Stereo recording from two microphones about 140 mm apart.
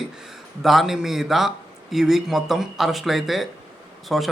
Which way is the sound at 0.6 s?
Centre (ahead or behind).